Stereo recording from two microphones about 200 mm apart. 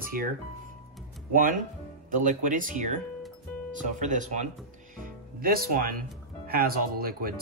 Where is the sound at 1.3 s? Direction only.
40° right (ahead or behind).